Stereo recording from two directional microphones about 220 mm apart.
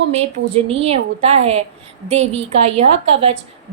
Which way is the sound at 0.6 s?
25° right (ahead or behind).